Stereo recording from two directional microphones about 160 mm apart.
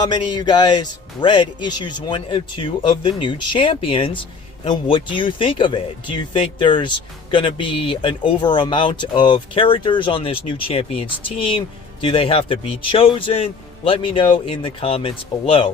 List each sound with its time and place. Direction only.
0.0 s speech: 30° left (ahead or behind)